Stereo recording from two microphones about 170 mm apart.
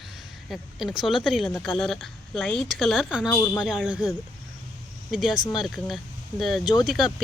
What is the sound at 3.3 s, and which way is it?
Speech, 15° left (ahead or behind).